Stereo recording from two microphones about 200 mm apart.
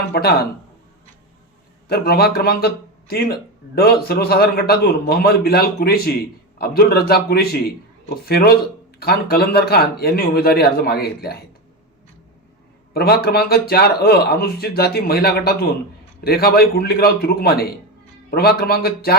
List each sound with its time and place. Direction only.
0.1 s speech: 55° left (ahead or behind)
1.9 s speech: 50° left (ahead or behind)
12.9 s speech: 50° left (ahead or behind)